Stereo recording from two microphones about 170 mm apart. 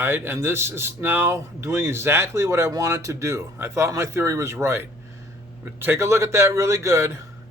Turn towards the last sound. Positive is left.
turn(degrees=-15)  # may be behind; listen again after turning